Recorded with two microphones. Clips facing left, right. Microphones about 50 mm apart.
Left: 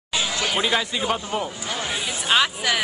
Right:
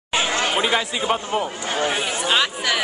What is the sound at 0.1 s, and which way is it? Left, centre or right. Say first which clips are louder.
Chatter: right 4 dB; right.